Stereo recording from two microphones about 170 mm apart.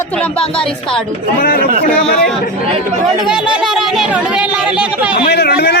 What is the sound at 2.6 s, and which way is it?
Speech, 35° right (ahead or behind).